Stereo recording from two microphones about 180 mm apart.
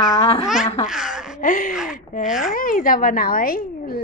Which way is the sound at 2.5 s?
50° left (ahead or behind).